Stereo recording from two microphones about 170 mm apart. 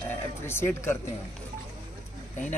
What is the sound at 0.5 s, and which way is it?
Speech, 15° left (ahead or behind).